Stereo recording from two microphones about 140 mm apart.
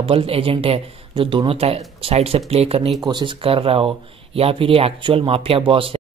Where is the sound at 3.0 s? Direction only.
35° right (ahead or behind).